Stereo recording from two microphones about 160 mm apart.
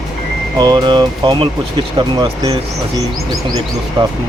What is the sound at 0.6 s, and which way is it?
Speech, 30° right (ahead or behind).